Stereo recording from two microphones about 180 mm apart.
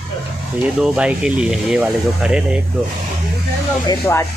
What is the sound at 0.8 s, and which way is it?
Speech, 5° right (ahead or behind).